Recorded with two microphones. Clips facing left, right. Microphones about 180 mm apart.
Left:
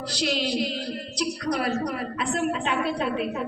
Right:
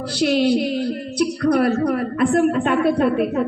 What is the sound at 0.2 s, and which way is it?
A woman's voice, 55° right (ahead or behind).